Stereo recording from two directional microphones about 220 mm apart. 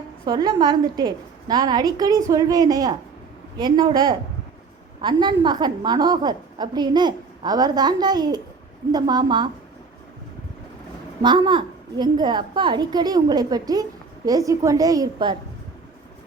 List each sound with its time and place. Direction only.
0.3 s a woman's voice: 20° right (ahead or behind)
11.2 s a woman's voice: 20° right (ahead or behind)